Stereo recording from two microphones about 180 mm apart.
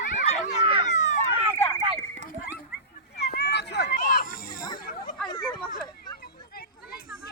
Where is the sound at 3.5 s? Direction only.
70° left (ahead or behind).